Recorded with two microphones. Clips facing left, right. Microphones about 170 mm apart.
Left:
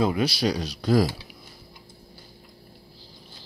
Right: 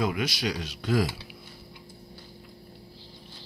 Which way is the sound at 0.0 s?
35° left (ahead or behind).